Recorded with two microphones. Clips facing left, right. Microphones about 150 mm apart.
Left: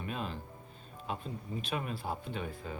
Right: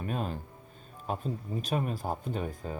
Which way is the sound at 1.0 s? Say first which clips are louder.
Right 5 dB; 45° right (ahead or behind).